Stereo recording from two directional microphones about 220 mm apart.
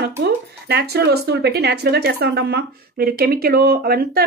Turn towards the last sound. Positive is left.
turn(degrees=-45)  # may be behind; listen again after turning